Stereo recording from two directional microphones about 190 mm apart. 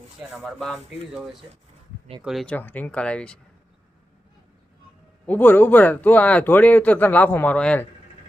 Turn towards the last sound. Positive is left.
turn(degrees=5)  # may be behind; listen again after turning